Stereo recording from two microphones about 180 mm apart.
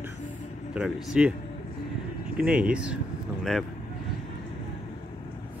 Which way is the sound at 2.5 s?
5° right (ahead or behind).